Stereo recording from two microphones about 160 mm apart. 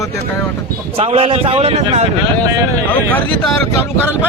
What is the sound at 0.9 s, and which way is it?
A man's voice, 35° right (ahead or behind).